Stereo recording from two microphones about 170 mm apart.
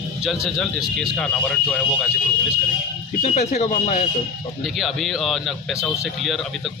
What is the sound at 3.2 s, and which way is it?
Speech, 45° left (ahead or behind).